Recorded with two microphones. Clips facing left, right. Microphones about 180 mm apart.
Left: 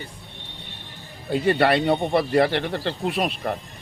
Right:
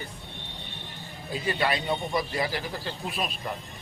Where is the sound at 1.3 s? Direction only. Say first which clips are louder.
Left 9 dB; 65° left (ahead or behind).